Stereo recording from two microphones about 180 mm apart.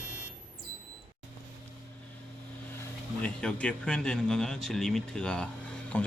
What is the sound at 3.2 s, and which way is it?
Speech, 5° left (ahead or behind).